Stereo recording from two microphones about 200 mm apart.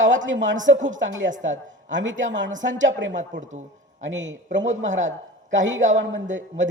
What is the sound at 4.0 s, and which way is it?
Speech, 65° right (ahead or behind).